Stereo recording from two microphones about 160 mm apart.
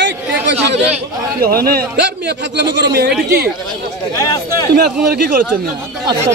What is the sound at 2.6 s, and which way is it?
Speech, 90° right.